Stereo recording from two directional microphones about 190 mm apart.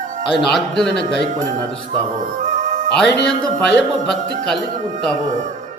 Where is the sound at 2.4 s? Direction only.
40° right (ahead or behind).